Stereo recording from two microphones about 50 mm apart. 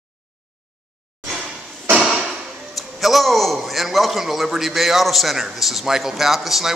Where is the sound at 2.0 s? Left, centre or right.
Centre.